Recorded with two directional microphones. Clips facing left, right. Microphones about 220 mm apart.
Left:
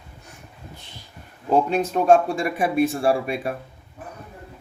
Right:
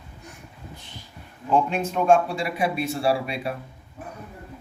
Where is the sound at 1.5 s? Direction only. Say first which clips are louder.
Left 3 dB; 40° left (ahead or behind).